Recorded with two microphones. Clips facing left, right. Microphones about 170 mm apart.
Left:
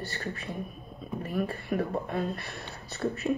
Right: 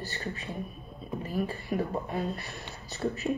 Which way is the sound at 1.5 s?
65° left (ahead or behind).